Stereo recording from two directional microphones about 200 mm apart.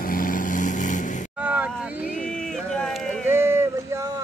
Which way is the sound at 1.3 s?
5° right (ahead or behind).